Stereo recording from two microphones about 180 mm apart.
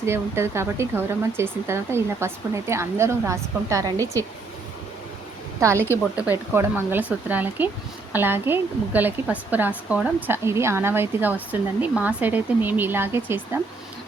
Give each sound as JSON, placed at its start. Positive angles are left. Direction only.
{"t": 0.0, "sound": "speech", "side_deg": -15}
{"t": 5.5, "sound": "a woman's voice", "side_deg": -15}